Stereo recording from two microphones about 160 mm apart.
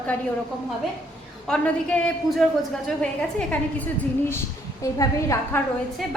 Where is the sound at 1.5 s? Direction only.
5° left (ahead or behind).